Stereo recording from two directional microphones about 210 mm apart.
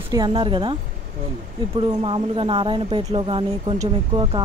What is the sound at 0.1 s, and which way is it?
Speech, 20° right (ahead or behind).